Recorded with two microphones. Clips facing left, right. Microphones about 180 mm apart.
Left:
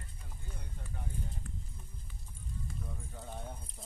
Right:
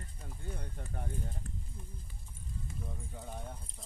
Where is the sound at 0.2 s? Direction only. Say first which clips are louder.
Right 8 dB; 55° right (ahead or behind).